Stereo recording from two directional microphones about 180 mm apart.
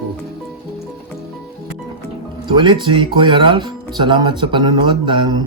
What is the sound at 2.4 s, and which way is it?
Speech, 25° right (ahead or behind).